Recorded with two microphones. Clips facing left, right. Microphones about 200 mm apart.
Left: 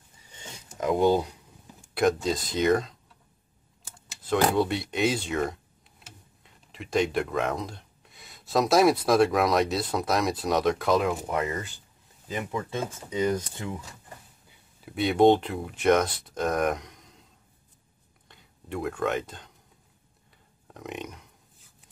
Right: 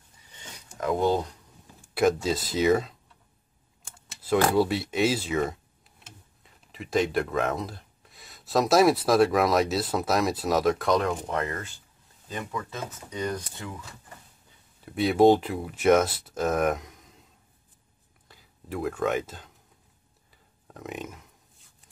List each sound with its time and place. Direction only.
0.7 s speech: 20° left (ahead or behind)
2.0 s speech: 5° right (ahead or behind)
4.6 s speech: centre (ahead or behind)
12.4 s speech: 25° left (ahead or behind)
14.9 s speech: centre (ahead or behind)
18.3 s speech: centre (ahead or behind)
20.6 s burping: centre (ahead or behind)